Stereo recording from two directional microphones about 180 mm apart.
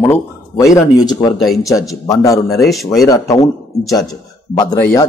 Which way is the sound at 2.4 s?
Centre (ahead or behind).